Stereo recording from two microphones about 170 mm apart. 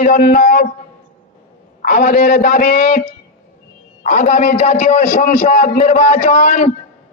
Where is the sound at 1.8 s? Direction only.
55° left (ahead or behind).